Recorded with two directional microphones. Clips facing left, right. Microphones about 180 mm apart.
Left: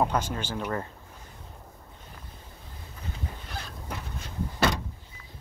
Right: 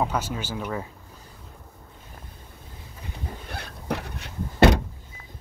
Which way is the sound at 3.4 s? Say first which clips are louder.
Right 7 dB; 65° right (ahead or behind).